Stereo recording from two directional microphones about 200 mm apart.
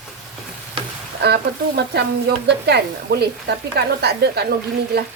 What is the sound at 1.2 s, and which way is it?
Speech, 55° right (ahead or behind).